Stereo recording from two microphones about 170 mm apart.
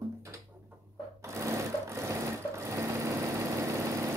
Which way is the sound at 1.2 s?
15° right (ahead or behind).